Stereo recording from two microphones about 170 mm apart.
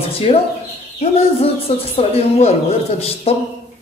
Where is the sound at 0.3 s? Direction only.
35° left (ahead or behind).